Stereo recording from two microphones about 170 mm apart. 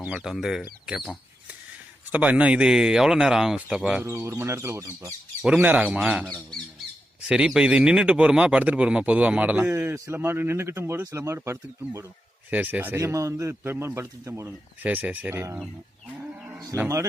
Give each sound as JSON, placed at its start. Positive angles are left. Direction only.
{"t": 0.0, "sound": "speech", "side_deg": -5}
{"t": 2.1, "sound": "speech", "side_deg": -10}
{"t": 4.0, "sound": "speech", "side_deg": -15}
{"t": 7.3, "sound": "speech", "side_deg": -5}
{"t": 16.7, "sound": "speech", "side_deg": -15}